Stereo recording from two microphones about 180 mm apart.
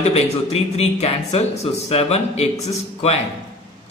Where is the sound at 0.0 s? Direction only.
35° left (ahead or behind).